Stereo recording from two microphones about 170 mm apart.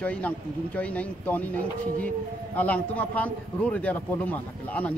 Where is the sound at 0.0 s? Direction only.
10° left (ahead or behind).